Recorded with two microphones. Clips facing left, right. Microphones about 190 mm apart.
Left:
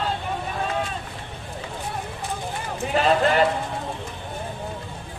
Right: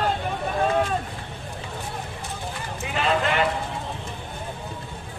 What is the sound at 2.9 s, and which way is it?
Clip-clop, 40° left (ahead or behind).